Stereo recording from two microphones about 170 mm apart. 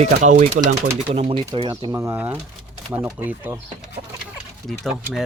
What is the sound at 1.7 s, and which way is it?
Speech, 20° right (ahead or behind).